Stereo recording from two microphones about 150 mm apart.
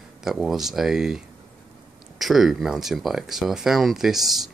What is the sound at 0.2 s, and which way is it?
Speech, centre (ahead or behind).